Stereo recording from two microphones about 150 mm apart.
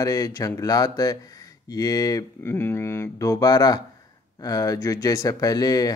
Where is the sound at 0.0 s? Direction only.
25° left (ahead or behind).